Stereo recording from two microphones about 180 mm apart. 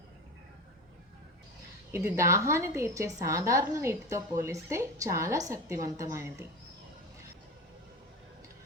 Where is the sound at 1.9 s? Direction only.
15° right (ahead or behind).